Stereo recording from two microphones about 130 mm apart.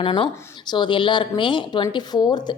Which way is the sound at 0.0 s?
40° left (ahead or behind).